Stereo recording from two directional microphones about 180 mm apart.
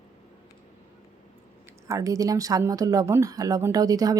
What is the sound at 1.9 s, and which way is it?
Speech, 20° right (ahead or behind).